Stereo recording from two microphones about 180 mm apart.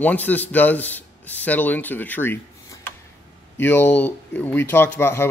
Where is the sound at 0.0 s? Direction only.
10° left (ahead or behind).